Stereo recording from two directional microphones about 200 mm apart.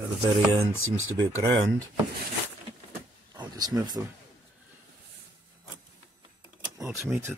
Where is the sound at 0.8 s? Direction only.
90° right.